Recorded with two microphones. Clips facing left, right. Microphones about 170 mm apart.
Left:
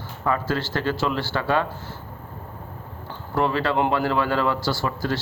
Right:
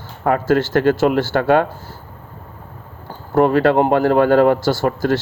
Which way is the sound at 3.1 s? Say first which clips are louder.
Right 9 dB; 45° right (ahead or behind).